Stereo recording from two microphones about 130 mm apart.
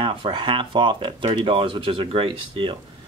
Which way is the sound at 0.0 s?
40° right (ahead or behind).